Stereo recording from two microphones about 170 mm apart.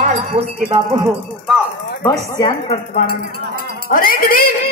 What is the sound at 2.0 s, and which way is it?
Speech, 20° left (ahead or behind).